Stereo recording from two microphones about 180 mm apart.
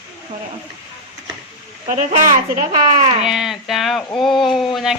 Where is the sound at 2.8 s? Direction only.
35° right (ahead or behind).